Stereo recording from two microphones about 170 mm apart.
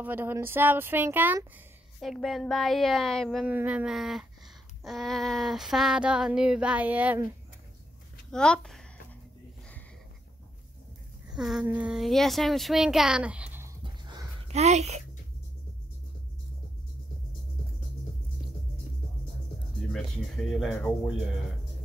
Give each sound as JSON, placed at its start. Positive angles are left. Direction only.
{"t": 0.0, "sound": "speech", "side_deg": -10}
{"t": 2.0, "sound": "female singing", "side_deg": 0}
{"t": 8.3, "sound": "speech", "side_deg": 5}
{"t": 11.3, "sound": "female singing", "side_deg": -5}
{"t": 14.5, "sound": "speech", "side_deg": -40}
{"t": 19.8, "sound": "female singing", "side_deg": 0}